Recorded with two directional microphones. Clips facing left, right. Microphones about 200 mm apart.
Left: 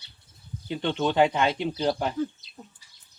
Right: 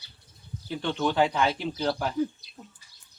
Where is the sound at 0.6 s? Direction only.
20° left (ahead or behind).